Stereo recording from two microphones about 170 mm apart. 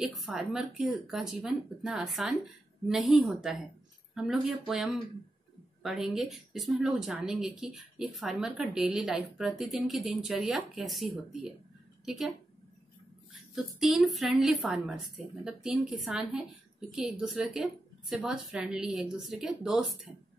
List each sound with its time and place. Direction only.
0.0 s a woman's voice: centre (ahead or behind)
13.3 s speech: centre (ahead or behind)